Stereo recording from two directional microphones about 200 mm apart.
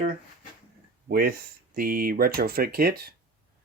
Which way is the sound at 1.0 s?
45° right (ahead or behind).